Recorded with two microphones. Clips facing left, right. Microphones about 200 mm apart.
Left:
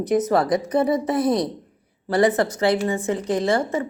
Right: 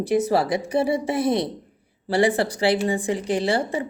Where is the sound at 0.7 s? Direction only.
30° right (ahead or behind).